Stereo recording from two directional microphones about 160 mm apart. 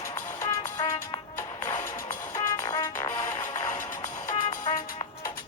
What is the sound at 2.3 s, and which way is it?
Music, 20° left (ahead or behind).